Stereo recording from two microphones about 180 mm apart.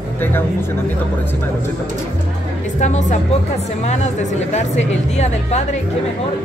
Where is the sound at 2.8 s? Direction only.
40° left (ahead or behind).